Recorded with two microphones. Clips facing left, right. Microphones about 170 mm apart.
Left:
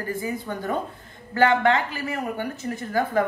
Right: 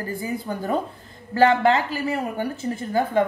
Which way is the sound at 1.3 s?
30° right (ahead or behind).